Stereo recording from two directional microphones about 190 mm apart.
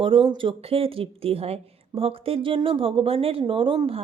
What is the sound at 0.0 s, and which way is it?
Speech, 25° right (ahead or behind).